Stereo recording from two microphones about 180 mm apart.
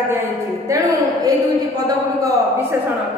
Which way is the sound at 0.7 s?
20° right (ahead or behind).